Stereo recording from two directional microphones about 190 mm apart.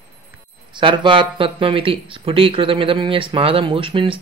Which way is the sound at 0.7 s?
25° right (ahead or behind).